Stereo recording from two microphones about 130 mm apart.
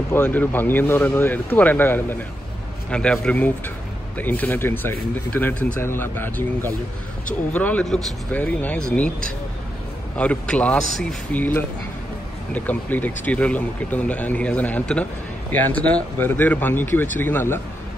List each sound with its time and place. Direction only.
0.1 s speech: 15° left (ahead or behind)
10.1 s speech: 10° left (ahead or behind)